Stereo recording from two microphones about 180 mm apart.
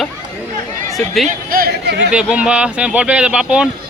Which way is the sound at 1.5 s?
55° right (ahead or behind).